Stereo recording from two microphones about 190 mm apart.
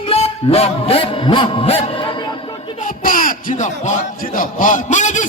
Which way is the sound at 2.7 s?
45° left (ahead or behind).